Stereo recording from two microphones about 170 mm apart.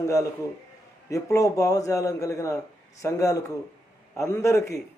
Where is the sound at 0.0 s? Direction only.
20° left (ahead or behind).